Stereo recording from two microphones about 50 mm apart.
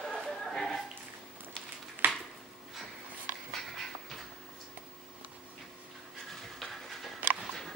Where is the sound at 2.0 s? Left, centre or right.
Right.